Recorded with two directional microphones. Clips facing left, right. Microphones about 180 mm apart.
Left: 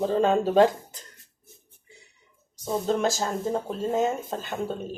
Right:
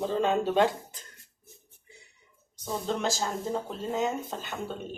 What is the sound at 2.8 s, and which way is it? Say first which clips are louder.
Speech: left 4 dB; 45° left (ahead or behind).